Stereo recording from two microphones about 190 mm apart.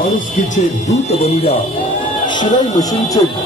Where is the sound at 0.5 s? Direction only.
35° left (ahead or behind).